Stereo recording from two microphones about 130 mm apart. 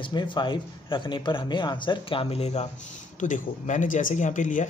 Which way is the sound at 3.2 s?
75° left (ahead or behind).